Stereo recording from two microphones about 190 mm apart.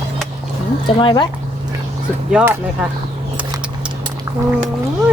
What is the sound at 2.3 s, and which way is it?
Speech, 10° right (ahead or behind).